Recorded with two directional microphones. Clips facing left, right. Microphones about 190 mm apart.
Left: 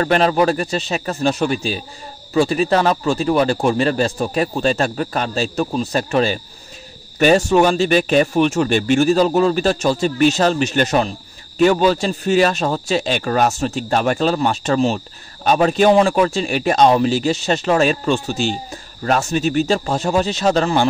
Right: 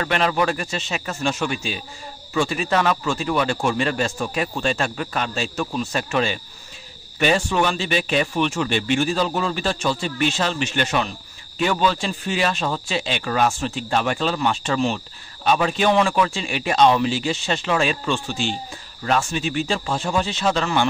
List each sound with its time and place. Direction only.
0.0 s a man's voice: 40° left (ahead or behind)